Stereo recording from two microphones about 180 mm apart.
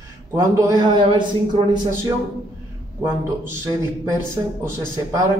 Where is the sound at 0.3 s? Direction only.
15° right (ahead or behind).